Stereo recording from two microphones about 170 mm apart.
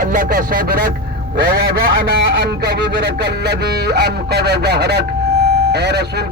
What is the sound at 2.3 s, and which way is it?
Speech, 80° right.